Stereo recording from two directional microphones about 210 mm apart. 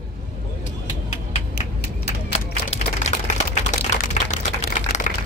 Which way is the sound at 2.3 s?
30° left (ahead or behind).